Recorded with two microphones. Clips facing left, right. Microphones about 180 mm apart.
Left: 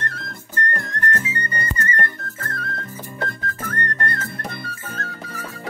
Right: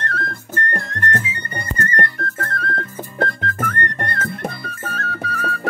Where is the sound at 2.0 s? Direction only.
65° right (ahead or behind).